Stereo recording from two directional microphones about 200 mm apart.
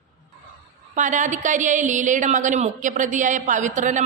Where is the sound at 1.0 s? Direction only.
40° right (ahead or behind).